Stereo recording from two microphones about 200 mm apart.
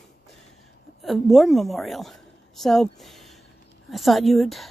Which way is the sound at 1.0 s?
Centre (ahead or behind).